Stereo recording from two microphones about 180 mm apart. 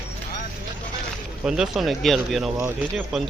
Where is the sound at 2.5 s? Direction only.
10° right (ahead or behind).